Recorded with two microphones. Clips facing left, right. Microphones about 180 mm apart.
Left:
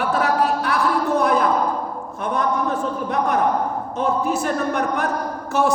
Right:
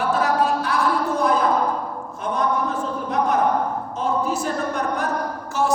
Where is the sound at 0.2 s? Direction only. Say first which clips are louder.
Left 1 dB; 60° left (ahead or behind).